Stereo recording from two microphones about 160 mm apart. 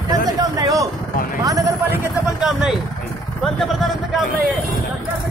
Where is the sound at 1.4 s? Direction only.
20° right (ahead or behind).